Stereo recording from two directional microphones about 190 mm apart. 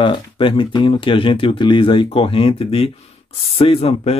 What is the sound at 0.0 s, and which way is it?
Speech, 25° left (ahead or behind).